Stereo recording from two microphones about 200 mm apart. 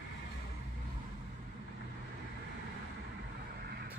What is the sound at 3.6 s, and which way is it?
Vehicle, 55° right (ahead or behind).